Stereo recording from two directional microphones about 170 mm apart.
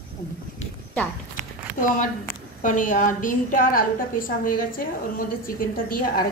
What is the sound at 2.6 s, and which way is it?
A woman's voice, 50° left (ahead or behind).